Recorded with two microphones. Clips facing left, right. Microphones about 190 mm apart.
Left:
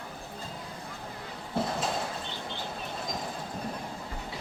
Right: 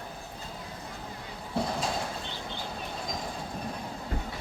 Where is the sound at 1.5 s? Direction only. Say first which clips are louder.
Even; centre (ahead or behind).